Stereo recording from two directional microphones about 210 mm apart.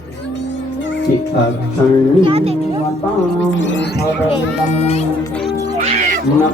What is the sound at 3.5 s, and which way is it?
Speech, 60° left (ahead or behind).